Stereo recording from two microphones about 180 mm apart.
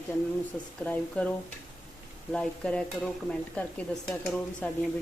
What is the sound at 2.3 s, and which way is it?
Stir, 5° left (ahead or behind).